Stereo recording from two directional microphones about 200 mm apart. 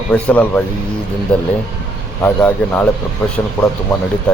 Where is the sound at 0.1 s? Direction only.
5° left (ahead or behind).